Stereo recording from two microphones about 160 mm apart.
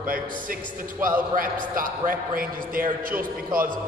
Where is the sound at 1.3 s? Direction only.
60° right (ahead or behind).